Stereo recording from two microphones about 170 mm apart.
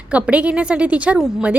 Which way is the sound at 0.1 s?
10° right (ahead or behind).